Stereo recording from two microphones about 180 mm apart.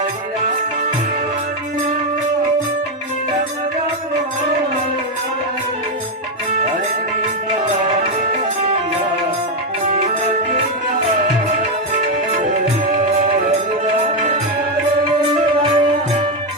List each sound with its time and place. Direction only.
11.2 s music: 45° right (ahead or behind)
15.3 s music: 25° right (ahead or behind)